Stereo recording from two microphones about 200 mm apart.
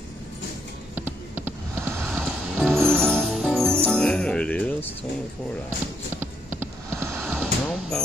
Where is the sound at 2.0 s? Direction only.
Centre (ahead or behind).